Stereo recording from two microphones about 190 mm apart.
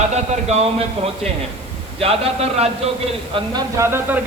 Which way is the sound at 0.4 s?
35° right (ahead or behind).